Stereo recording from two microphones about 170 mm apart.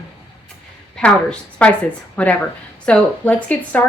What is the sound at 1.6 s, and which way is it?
Speech, 5° left (ahead or behind).